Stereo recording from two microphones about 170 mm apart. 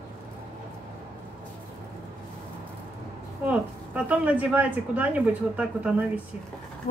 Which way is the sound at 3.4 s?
10° right (ahead or behind).